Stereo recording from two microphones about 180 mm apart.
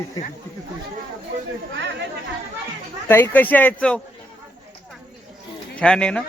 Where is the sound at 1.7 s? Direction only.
80° right.